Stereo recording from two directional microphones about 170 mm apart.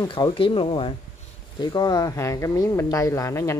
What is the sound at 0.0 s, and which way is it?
Speech, 25° left (ahead or behind).